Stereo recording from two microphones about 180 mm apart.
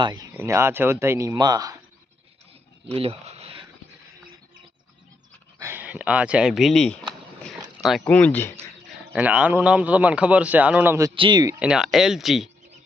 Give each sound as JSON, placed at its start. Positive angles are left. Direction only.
{"t": 0.0, "sound": "speech", "side_deg": -20}
{"t": 2.8, "sound": "a sound", "side_deg": -30}
{"t": 5.5, "sound": "speech", "side_deg": -15}
{"t": 9.1, "sound": "speech", "side_deg": -10}
{"t": 11.1, "sound": "speech", "side_deg": -25}
{"t": 11.6, "sound": "speech", "side_deg": -5}